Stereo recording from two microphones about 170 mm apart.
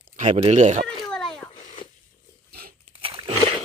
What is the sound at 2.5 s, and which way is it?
Crunch, 65° right (ahead or behind).